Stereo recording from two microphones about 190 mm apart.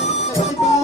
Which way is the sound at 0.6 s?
35° left (ahead or behind).